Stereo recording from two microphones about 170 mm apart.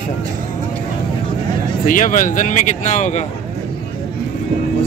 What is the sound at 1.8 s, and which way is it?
Speech, 50° left (ahead or behind).